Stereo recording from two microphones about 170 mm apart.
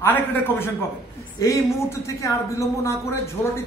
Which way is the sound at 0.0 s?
10° left (ahead or behind).